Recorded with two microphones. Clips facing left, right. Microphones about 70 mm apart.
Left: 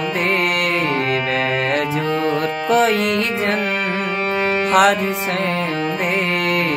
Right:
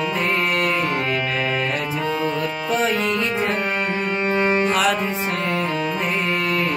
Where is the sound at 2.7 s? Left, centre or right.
Left.